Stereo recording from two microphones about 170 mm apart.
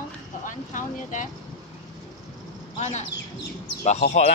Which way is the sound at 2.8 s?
45° left (ahead or behind).